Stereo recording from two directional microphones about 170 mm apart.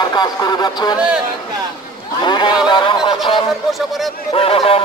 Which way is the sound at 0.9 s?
5° right (ahead or behind).